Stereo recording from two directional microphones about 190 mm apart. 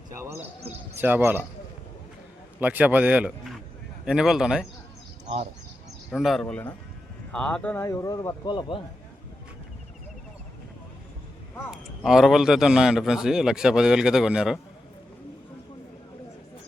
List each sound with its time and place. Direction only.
0.2 s a man's voice: 10° right (ahead or behind)
2.6 s a man's voice: 10° right (ahead or behind)
6.1 s a man's voice: centre (ahead or behind); by 8.8 s 25° left (ahead or behind)
11.7 s a man's voice: centre (ahead or behind)